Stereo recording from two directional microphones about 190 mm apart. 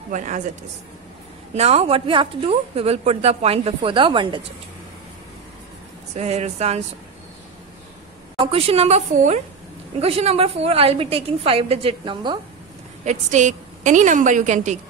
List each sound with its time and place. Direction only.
0.1 s a woman's voice: 40° right (ahead or behind)
1.5 s a woman's voice: 35° right (ahead or behind)
6.1 s a woman's voice: 35° right (ahead or behind)
8.4 s a woman's voice: 30° right (ahead or behind)
13.0 s a woman's voice: 40° right (ahead or behind)